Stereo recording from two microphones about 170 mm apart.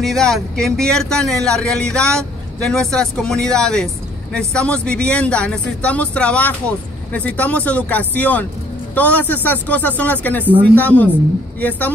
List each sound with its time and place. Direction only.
0.0 s speech: centre (ahead or behind)